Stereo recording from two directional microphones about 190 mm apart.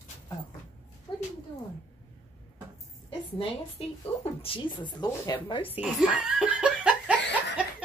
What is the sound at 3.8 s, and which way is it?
Speech, 30° left (ahead or behind).